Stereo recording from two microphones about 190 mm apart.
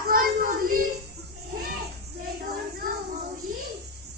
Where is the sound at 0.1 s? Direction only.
50° right (ahead or behind).